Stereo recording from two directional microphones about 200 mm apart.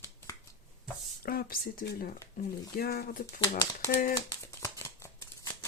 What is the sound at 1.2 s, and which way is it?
Speech, 50° left (ahead or behind).